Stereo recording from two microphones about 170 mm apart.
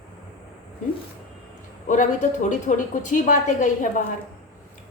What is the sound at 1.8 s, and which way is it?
A woman's voice, 50° left (ahead or behind).